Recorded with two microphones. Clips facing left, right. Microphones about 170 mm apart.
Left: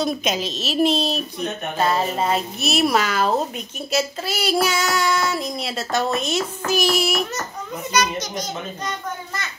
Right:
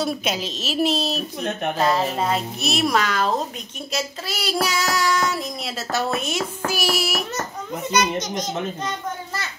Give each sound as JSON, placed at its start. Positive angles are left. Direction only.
{"t": 0.0, "sound": "a woman's voice", "side_deg": -10}
{"t": 7.9, "sound": "a child's voice", "side_deg": -20}